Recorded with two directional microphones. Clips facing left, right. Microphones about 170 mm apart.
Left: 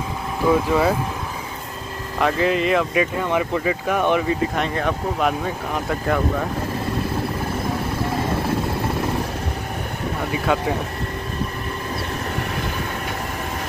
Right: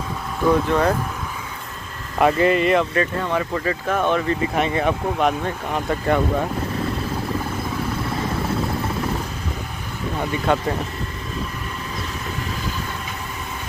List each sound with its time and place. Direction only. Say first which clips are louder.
0.5 s speech: even; 5° left (ahead or behind)
2.1 s speech: right 3 dB; centre (ahead or behind)
2.9 s speech: left 1 dB; 10° left (ahead or behind)
4.6 s speech: right 2 dB; centre (ahead or behind)
10.3 s speech: right 1 dB; 5° left (ahead or behind)